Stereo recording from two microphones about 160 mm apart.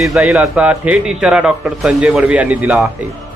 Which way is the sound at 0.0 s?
Centre (ahead or behind).